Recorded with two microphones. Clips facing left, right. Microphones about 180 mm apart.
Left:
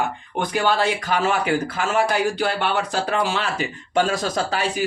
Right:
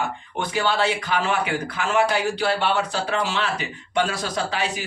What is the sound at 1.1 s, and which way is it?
A man's voice, 40° left (ahead or behind).